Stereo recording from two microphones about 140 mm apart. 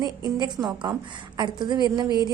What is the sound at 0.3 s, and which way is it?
A woman's voice, 30° right (ahead or behind).